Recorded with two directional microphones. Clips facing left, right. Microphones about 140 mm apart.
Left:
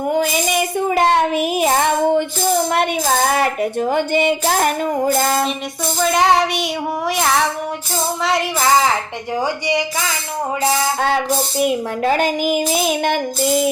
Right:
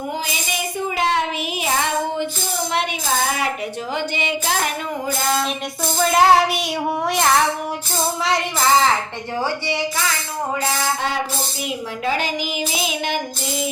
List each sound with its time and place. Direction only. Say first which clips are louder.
0.9 s child singing: left 5 dB; 50° left (ahead or behind)
3.3 s music: left 7 dB; 50° left (ahead or behind)
6.0 s music: right 1 dB; centre (ahead or behind)
9.4 s a woman's voice: left 4 dB; 15° left (ahead or behind)
11.6 s music: left 7 dB; 50° left (ahead or behind)